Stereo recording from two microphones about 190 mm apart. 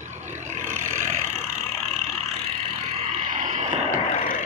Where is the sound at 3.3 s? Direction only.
35° right (ahead or behind).